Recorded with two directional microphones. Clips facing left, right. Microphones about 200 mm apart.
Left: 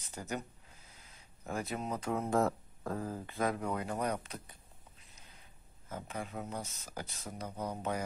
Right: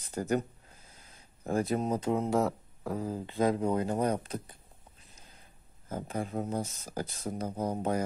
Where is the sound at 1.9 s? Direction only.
20° right (ahead or behind).